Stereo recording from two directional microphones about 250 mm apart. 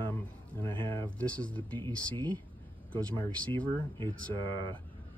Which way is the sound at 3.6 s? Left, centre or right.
Centre.